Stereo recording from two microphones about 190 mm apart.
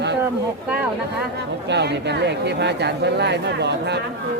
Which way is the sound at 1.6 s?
65° right (ahead or behind).